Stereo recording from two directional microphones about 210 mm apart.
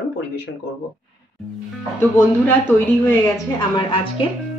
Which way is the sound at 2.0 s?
10° left (ahead or behind).